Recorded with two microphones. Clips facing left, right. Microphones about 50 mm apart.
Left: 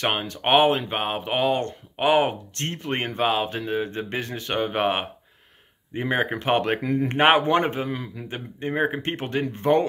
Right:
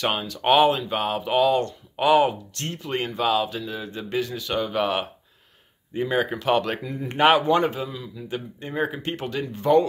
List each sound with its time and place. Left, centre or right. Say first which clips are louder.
0.0 s speech: even; left
7.9 s a man's voice: left 4 dB; left
8.3 s speech: left 2 dB; left